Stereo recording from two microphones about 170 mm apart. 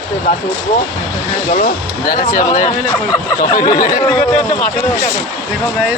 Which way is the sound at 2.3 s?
50° left (ahead or behind).